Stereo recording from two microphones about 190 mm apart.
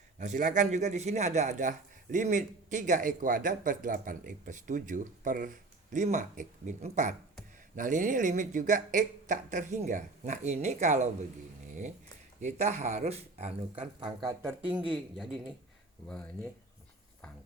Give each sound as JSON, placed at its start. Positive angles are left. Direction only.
{"t": 0.2, "sound": "a man's voice", "side_deg": -40}
{"t": 12.4, "sound": "a man's voice", "side_deg": -35}
{"t": 14.2, "sound": "speech", "side_deg": -20}
{"t": 14.8, "sound": "speech", "side_deg": -5}